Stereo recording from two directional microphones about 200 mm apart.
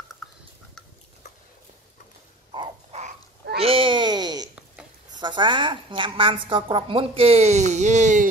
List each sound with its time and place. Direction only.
2.5 s crow: 25° right (ahead or behind)
3.5 s babbling: 30° right (ahead or behind)
5.1 s a woman's voice: 20° right (ahead or behind)